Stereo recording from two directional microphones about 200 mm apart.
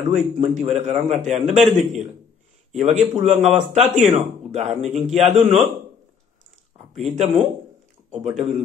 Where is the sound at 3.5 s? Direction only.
Centre (ahead or behind).